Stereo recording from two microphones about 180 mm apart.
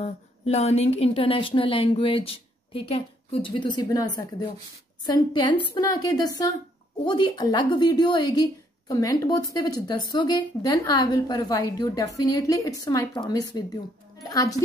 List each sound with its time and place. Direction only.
0.0 s a woman's voice: 35° left (ahead or behind); by 14.6 s 20° left (ahead or behind)